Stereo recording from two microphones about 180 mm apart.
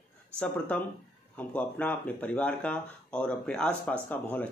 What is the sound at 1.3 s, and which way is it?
Speech, 10° left (ahead or behind).